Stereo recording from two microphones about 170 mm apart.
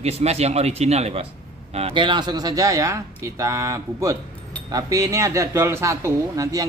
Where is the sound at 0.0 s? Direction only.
40° right (ahead or behind).